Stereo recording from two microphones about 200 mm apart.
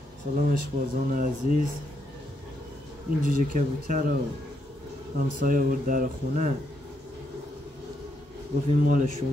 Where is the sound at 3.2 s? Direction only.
40° right (ahead or behind).